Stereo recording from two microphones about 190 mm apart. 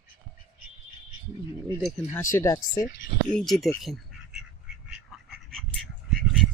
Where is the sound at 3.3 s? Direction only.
Centre (ahead or behind).